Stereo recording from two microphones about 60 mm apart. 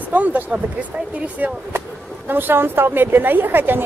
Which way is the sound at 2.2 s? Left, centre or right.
Right.